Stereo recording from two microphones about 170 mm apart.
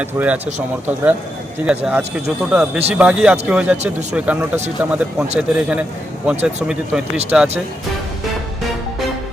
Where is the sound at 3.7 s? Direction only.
40° right (ahead or behind).